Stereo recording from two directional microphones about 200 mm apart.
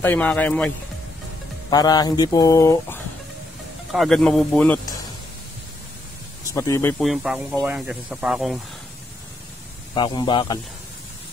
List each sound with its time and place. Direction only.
0.0 s speech: 10° left (ahead or behind)
1.7 s speech: 20° left (ahead or behind)
3.9 s speech: centre (ahead or behind)
6.4 s speech: 15° left (ahead or behind)
7.0 s speech: 5° right (ahead or behind)
9.9 s speech: 20° left (ahead or behind)